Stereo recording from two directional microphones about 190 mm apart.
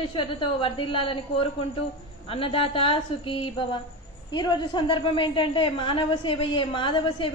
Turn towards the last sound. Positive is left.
turn(degrees=25)  # may be behind; listen again after turning